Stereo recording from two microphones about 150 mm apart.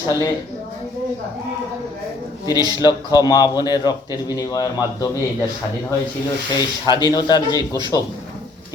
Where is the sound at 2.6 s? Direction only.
25° right (ahead or behind).